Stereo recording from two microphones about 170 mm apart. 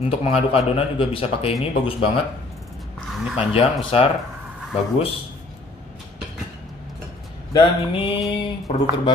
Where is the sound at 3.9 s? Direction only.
35° left (ahead or behind).